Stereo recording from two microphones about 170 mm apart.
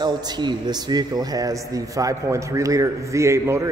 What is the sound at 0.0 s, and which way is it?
A man's voice, 25° right (ahead or behind).